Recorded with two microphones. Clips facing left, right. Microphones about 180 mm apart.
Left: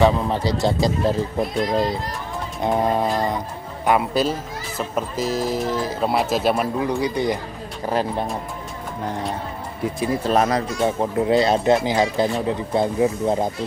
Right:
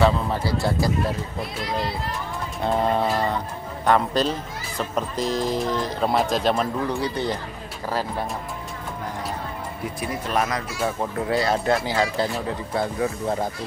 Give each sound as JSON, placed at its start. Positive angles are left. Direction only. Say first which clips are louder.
{"t": 0.0, "sound": "speech", "louder": "left 3 dB", "side_deg": 20}
{"t": 2.6, "sound": "speech", "louder": "left 2 dB", "side_deg": 15}
{"t": 9.9, "sound": "speech", "louder": "left 6 dB", "side_deg": 30}